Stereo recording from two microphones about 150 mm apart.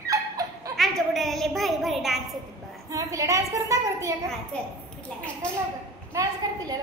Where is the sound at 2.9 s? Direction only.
20° right (ahead or behind).